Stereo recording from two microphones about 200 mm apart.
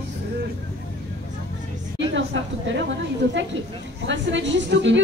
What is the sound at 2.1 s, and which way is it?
Speech, 65° right (ahead or behind).